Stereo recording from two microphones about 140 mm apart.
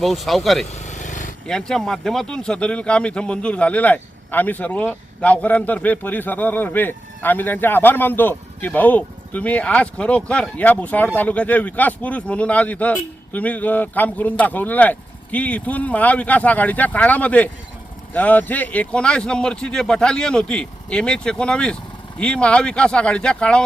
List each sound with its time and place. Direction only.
0.0 s speech: centre (ahead or behind)
0.7 s vehicle: 55° left (ahead or behind)
1.5 s speech: 5° left (ahead or behind)